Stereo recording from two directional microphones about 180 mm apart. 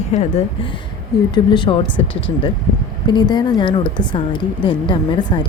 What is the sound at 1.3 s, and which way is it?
Speech, 25° left (ahead or behind).